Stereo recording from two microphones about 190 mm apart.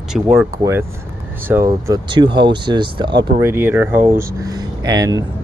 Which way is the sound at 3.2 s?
15° right (ahead or behind).